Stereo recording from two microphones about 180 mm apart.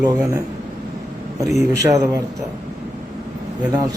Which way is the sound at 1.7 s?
20° right (ahead or behind).